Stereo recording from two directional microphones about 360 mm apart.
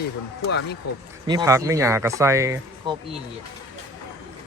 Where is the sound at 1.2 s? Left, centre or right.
Centre.